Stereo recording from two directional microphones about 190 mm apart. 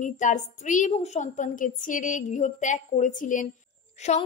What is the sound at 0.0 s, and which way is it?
A woman's voice, 40° left (ahead or behind).